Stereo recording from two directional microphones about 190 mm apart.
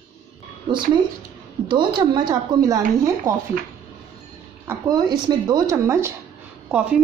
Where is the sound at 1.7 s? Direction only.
25° right (ahead or behind).